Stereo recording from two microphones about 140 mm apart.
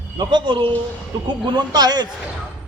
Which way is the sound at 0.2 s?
35° right (ahead or behind).